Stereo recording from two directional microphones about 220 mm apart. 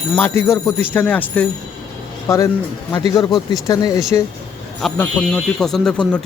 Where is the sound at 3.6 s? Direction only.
15° left (ahead or behind).